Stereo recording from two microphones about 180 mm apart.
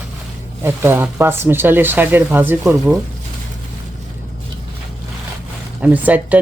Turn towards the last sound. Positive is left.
turn(degrees=-10)  # may be behind; listen again after turning